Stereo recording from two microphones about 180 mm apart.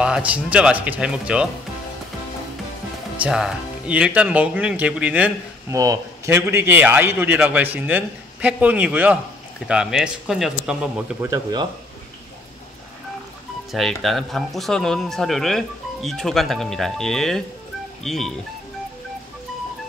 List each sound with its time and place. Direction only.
0.0 s speech: 5° right (ahead or behind)
3.2 s speech: 5° right (ahead or behind)
11.1 s speech: 15° right (ahead or behind)
13.7 s speech: centre (ahead or behind)